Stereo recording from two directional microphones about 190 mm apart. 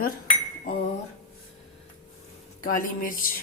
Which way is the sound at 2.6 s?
45° left (ahead or behind).